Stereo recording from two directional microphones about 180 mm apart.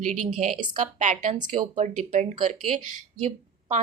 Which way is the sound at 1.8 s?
40° right (ahead or behind).